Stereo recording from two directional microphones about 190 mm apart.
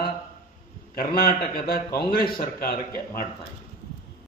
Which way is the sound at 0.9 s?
50° left (ahead or behind).